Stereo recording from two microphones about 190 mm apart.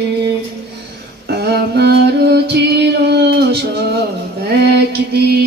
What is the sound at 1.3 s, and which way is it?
Music, 60° right (ahead or behind).